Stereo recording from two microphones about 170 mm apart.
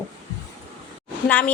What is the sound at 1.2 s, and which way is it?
Speech, 10° left (ahead or behind).